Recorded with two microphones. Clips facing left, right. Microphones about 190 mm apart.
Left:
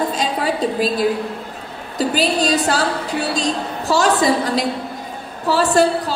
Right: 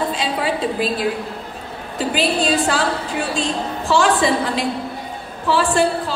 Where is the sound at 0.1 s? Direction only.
40° left (ahead or behind).